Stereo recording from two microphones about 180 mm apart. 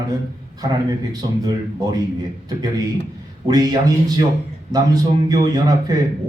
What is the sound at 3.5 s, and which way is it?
A man's voice, 20° right (ahead or behind).